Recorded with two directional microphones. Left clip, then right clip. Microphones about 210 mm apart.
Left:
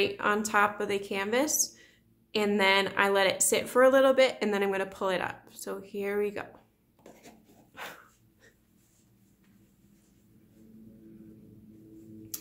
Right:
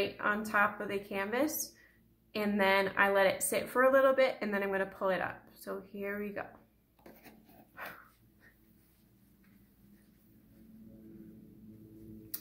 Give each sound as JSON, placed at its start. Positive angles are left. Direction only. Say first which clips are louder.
{"t": 0.0, "sound": "a woman's voice", "louder": "left 5 dB", "side_deg": 45}
{"t": 7.7, "sound": "dog", "louder": "left 3 dB", "side_deg": 40}